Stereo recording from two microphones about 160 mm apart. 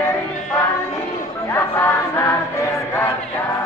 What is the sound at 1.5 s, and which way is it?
Music, 15° left (ahead or behind).